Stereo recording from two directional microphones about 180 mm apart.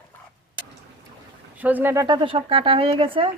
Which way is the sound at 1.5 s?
10° right (ahead or behind).